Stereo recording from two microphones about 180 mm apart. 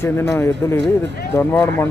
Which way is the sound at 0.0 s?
15° left (ahead or behind).